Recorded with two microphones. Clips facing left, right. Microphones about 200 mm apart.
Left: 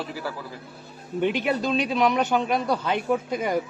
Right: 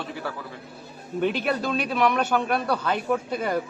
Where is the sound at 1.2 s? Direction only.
15° left (ahead or behind).